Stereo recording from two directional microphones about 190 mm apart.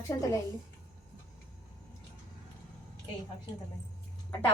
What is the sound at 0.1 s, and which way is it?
Speech, 15° left (ahead or behind).